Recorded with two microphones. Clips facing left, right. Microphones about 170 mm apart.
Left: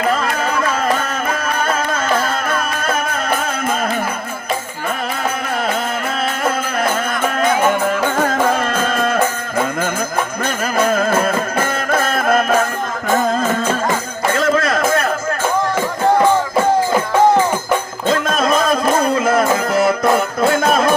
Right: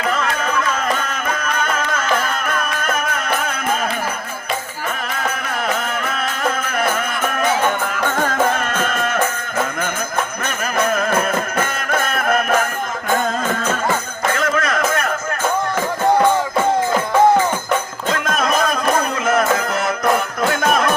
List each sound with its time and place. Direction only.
0.9 s music: 30° left (ahead or behind)
8.5 s music: 30° left (ahead or behind)
10.4 s music: 30° left (ahead or behind)
14.3 s music: 30° left (ahead or behind)
18.1 s music: 30° left (ahead or behind)